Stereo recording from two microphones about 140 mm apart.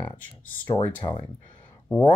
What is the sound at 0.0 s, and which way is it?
Speech, 15° left (ahead or behind).